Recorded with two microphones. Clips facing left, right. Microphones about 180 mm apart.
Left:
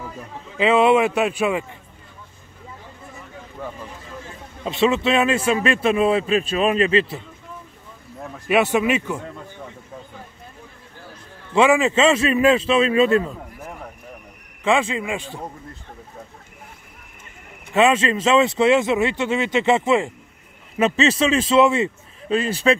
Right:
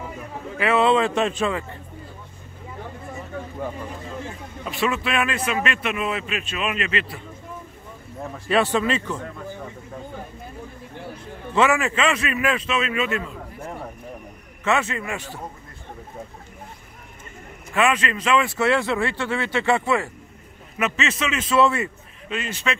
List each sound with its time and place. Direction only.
0.6 s speech: 15° left (ahead or behind)
4.6 s speech: 25° left (ahead or behind)
8.5 s speech: 15° left (ahead or behind)
11.5 s speech: 15° left (ahead or behind); by 13.3 s 35° left (ahead or behind)
14.6 s speech: 15° left (ahead or behind)
17.7 s speech: 25° left (ahead or behind)
21.5 s speech: 20° left (ahead or behind)
22.3 s speech: 35° left (ahead or behind)